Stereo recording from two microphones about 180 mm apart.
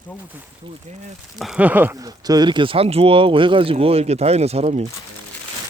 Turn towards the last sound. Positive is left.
turn(degrees=-40)  # may be behind; listen again after turning